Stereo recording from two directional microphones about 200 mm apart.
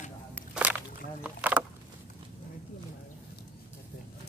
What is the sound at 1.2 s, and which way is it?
Rowboat, 5° right (ahead or behind).